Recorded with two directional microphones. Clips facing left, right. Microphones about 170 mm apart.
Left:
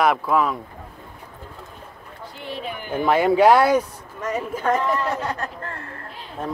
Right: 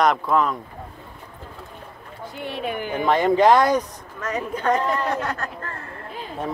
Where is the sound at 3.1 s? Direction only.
10° left (ahead or behind).